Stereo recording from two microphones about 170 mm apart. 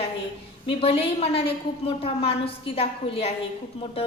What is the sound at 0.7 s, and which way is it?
A woman's voice, 35° left (ahead or behind).